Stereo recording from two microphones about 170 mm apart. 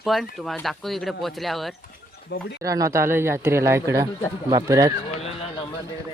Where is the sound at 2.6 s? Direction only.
20° right (ahead or behind).